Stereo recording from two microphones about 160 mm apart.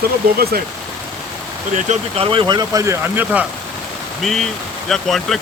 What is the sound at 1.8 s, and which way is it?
Speech, 45° right (ahead or behind).